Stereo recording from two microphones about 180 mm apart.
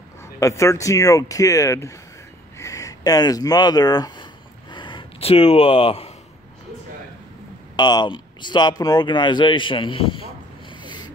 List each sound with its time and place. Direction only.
0.4 s speech: 15° left (ahead or behind)
2.6 s a sound: 20° left (ahead or behind)
7.7 s speech: 25° left (ahead or behind)
10.8 s snort: 25° left (ahead or behind)